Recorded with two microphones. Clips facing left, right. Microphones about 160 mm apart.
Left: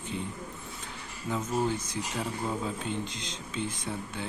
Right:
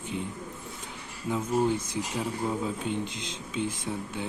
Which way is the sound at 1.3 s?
10° right (ahead or behind).